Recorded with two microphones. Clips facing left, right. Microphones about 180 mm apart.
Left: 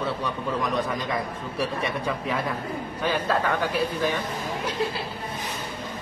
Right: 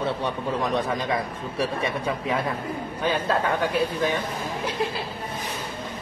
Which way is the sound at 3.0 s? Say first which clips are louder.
Right 1 dB; 20° right (ahead or behind).